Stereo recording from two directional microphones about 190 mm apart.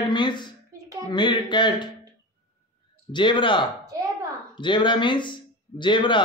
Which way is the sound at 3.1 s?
25° left (ahead or behind).